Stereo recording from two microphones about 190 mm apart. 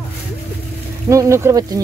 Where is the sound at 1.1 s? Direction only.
15° right (ahead or behind).